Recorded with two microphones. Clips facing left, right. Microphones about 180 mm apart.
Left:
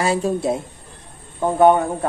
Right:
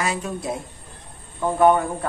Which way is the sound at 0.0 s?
30° left (ahead or behind).